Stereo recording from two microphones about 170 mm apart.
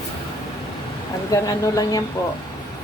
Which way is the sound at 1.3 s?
20° left (ahead or behind).